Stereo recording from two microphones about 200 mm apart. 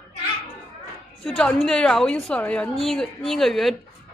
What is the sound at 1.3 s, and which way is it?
A woman's voice, centre (ahead or behind).